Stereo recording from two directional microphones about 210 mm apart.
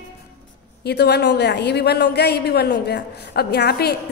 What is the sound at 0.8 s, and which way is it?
A woman's voice, 50° left (ahead or behind).